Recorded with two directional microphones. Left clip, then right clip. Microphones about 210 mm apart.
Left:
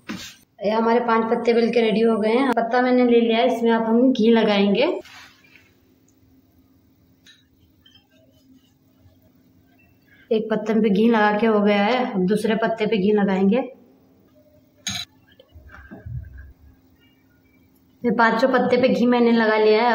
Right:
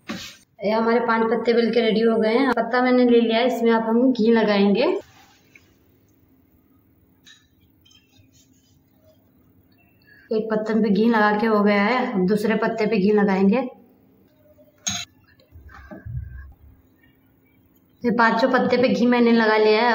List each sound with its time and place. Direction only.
0.6 s a woman's voice: 15° left (ahead or behind)
10.2 s a woman's voice: 20° left (ahead or behind)
18.0 s a woman's voice: 5° left (ahead or behind)